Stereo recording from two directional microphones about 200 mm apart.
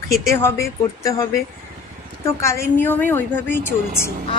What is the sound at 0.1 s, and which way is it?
Speech, 15° left (ahead or behind).